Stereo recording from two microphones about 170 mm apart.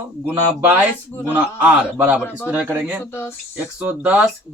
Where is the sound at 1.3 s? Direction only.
10° right (ahead or behind).